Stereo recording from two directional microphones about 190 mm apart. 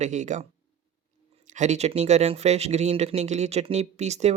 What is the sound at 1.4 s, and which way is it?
Speech, 40° right (ahead or behind).